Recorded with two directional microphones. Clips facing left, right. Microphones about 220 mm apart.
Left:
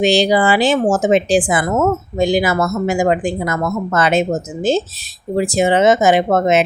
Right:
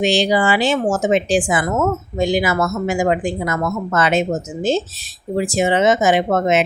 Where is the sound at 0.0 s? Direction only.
35° left (ahead or behind).